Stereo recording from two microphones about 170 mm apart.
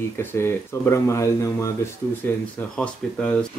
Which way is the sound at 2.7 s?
5° left (ahead or behind).